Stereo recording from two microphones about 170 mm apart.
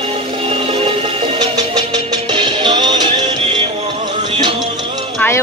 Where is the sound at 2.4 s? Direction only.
25° right (ahead or behind).